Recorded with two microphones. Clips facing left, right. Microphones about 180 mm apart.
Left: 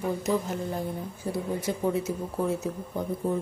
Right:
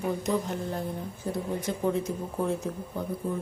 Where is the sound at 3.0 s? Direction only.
15° left (ahead or behind).